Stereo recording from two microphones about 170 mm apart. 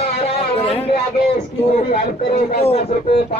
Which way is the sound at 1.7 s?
55° left (ahead or behind).